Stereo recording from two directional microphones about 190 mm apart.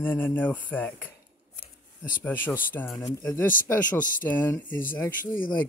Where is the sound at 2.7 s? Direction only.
10° left (ahead or behind).